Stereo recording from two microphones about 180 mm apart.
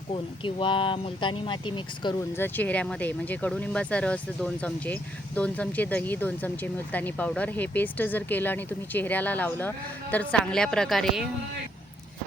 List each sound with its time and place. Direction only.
0.1 s speech: 25° left (ahead or behind)
2.3 s speech: 10° left (ahead or behind)